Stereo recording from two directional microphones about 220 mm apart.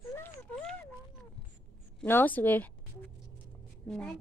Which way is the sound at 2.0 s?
10° left (ahead or behind).